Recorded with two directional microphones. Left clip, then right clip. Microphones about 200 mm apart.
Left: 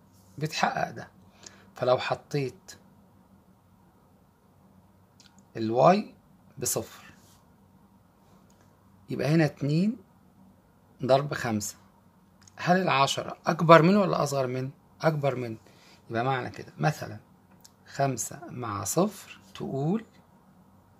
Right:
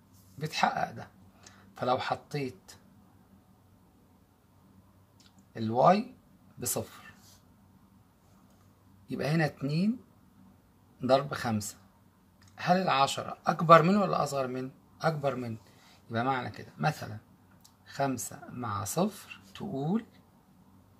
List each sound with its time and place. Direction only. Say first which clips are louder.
0.4 s speech: left 1 dB; 35° left (ahead or behind)
5.5 s speech: left 3 dB; 35° left (ahead or behind)
9.1 s speech: left 5 dB; 35° left (ahead or behind)
11.0 s speech: left 3 dB; 35° left (ahead or behind)